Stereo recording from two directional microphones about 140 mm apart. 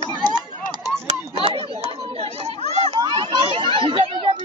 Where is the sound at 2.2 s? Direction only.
45° right (ahead or behind).